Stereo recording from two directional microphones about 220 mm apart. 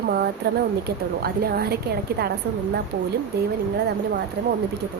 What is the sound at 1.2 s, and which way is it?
A woman's voice, 45° right (ahead or behind).